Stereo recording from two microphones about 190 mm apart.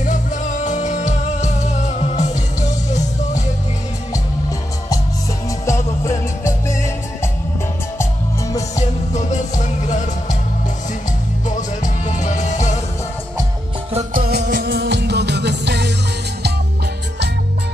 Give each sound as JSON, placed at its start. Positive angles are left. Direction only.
{"t": 0.0, "sound": "music", "side_deg": 40}
{"t": 5.7, "sound": "music", "side_deg": 15}
{"t": 8.0, "sound": "music", "side_deg": 15}
{"t": 9.1, "sound": "music", "side_deg": 40}
{"t": 11.4, "sound": "music", "side_deg": 40}
{"t": 13.9, "sound": "music", "side_deg": -50}